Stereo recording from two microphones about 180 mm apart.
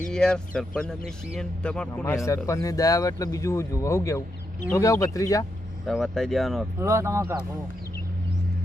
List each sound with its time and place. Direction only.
0.1 s a man's voice: 5° left (ahead or behind)
2.2 s speech: 15° left (ahead or behind)
5.8 s a man's voice: centre (ahead or behind)
6.7 s speech: 15° right (ahead or behind)